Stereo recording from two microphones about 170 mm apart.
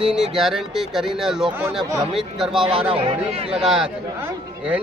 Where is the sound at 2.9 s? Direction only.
35° right (ahead or behind).